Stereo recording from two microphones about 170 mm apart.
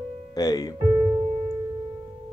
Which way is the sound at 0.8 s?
15° right (ahead or behind).